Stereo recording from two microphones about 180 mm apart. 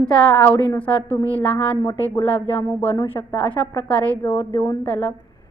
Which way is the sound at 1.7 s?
25° left (ahead or behind).